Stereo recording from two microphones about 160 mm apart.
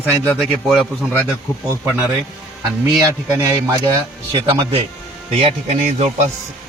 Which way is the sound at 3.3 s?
25° right (ahead or behind).